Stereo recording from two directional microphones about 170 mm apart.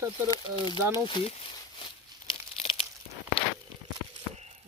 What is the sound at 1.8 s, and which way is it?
Crumpling, 30° left (ahead or behind).